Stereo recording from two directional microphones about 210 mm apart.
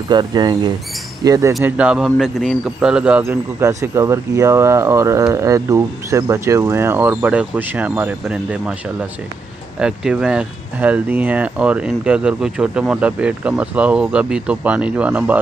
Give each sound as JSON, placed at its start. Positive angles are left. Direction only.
{"t": 0.1, "sound": "speech", "side_deg": -20}
{"t": 1.5, "sound": "speech", "side_deg": -5}
{"t": 9.8, "sound": "speech", "side_deg": -5}